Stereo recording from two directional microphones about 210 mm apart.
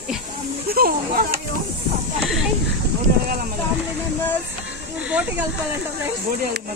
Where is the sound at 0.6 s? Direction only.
45° right (ahead or behind).